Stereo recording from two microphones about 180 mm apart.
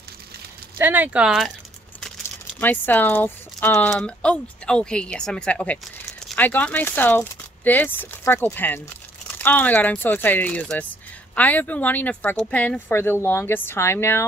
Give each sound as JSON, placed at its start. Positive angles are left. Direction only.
{"t": 0.7, "sound": "speech", "side_deg": -10}
{"t": 2.6, "sound": "speech", "side_deg": 10}